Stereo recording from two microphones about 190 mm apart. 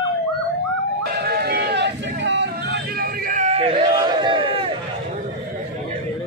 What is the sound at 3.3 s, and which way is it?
Crowd, 40° right (ahead or behind).